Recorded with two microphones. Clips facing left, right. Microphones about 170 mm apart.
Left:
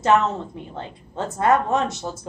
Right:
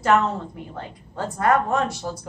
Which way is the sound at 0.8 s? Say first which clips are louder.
Left 1 dB; 25° left (ahead or behind).